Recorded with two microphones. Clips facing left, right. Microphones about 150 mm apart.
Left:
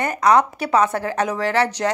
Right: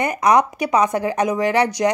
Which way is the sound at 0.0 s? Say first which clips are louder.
Even; 15° right (ahead or behind).